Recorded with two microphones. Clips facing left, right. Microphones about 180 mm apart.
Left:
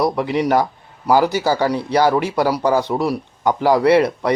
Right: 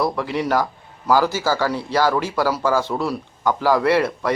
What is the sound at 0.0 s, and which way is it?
A man's voice, 15° left (ahead or behind).